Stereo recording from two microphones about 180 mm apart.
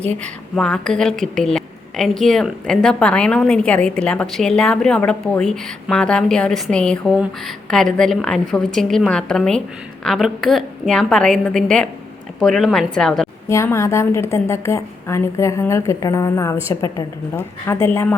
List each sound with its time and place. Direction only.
0.2 s a woman's voice: 5° left (ahead or behind)
13.5 s a woman's voice: 15° left (ahead or behind)